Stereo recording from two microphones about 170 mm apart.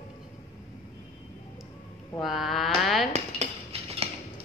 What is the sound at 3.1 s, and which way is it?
Cutlery, 40° right (ahead or behind).